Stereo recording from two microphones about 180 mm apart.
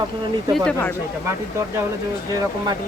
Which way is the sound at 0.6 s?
10° left (ahead or behind).